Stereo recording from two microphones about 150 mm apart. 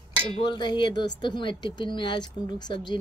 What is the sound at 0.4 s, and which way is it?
Speech, 30° left (ahead or behind).